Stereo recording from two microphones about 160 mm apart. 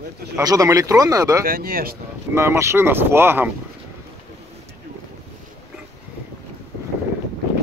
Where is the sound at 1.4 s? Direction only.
65° right (ahead or behind).